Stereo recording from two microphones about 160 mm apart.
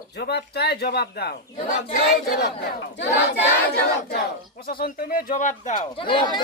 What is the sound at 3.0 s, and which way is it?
Battle cry, 90° left.